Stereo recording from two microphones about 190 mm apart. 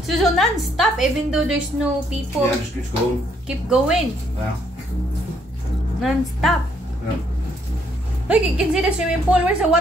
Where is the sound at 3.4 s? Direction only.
5° right (ahead or behind).